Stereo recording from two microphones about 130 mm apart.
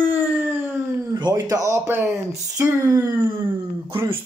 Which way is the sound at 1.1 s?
30° right (ahead or behind).